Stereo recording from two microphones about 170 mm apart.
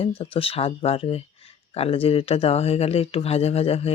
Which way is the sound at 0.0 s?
35° left (ahead or behind).